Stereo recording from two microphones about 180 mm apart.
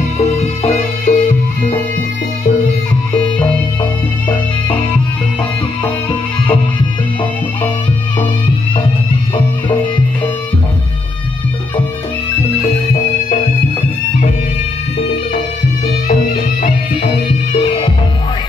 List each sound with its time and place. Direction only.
0.2 s music: 35° left (ahead or behind)
16.6 s music: 40° left (ahead or behind)